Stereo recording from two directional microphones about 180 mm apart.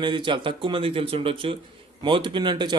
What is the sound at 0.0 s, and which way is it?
Speech, 25° right (ahead or behind).